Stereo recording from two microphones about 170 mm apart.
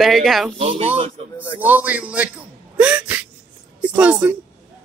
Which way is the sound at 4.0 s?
10° right (ahead or behind).